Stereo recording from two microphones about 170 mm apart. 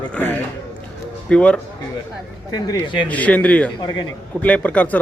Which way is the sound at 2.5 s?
25° left (ahead or behind).